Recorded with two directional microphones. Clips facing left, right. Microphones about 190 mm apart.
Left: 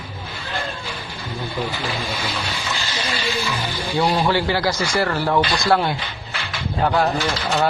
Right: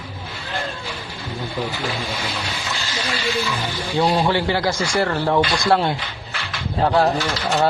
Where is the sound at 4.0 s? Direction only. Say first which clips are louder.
Right 1 dB; 20° right (ahead or behind).